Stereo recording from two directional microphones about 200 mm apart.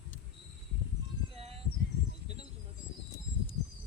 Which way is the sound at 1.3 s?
30° right (ahead or behind).